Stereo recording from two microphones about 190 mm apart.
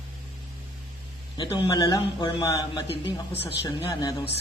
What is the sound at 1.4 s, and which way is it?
A woman's voice, 20° left (ahead or behind).